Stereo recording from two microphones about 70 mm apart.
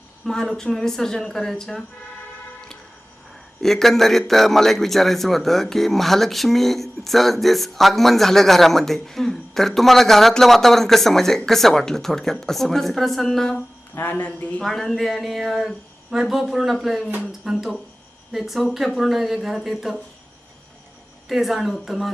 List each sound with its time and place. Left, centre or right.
0.3 s speech: centre
3.6 s a man's voice: centre
13.9 s speech: left
14.6 s a man's voice: centre
21.2 s a man's voice: centre